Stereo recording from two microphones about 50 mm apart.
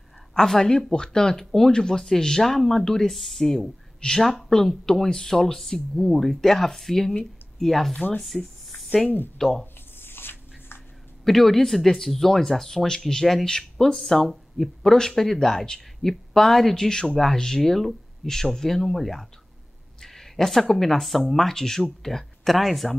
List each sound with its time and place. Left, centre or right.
0.3 s speech: centre
9.9 s a sound: left
11.2 s speech: centre